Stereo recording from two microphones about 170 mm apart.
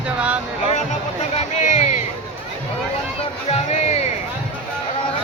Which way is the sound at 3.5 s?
40° left (ahead or behind).